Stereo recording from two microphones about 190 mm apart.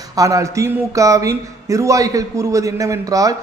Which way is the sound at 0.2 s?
15° right (ahead or behind).